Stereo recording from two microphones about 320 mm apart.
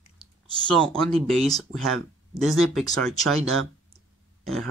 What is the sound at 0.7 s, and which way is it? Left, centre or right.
Speech, centre.